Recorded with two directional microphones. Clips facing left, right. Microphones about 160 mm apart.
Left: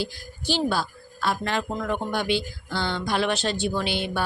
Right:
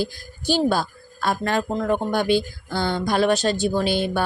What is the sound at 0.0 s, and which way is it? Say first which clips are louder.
A woman's voice: right 4 dB; 45° right (ahead or behind).